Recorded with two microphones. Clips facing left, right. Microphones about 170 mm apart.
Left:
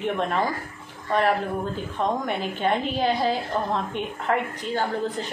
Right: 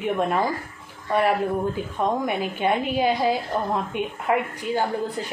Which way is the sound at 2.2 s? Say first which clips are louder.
Right 2 dB; 10° right (ahead or behind).